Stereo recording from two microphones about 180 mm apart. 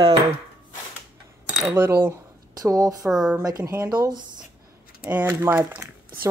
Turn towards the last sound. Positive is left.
turn(degrees=-15)  # may be behind; listen again after turning